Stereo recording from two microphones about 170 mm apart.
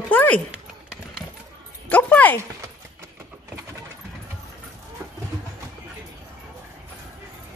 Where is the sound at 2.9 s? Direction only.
15° right (ahead or behind).